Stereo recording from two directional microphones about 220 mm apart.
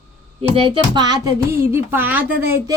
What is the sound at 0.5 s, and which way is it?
Speech, 25° right (ahead or behind).